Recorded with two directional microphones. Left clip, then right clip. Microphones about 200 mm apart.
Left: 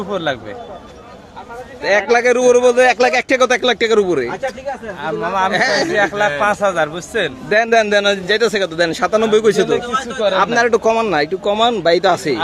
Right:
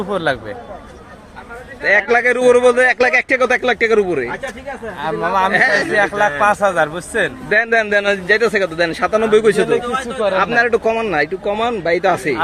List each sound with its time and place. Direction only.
0.1 s speech: 20° right (ahead or behind)
1.8 s a man's voice: 20° left (ahead or behind)
4.9 s speech: 25° right (ahead or behind)
5.5 s a man's voice: 15° left (ahead or behind)
6.0 s a man's voice: 15° right (ahead or behind); by 7.3 s centre (ahead or behind)
7.5 s a man's voice: 20° left (ahead or behind)
10.2 s a man's voice: centre (ahead or behind)
10.4 s a man's voice: 20° left (ahead or behind)